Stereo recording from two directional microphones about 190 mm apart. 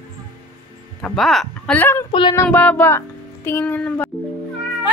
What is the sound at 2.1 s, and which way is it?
Child singing, 25° left (ahead or behind).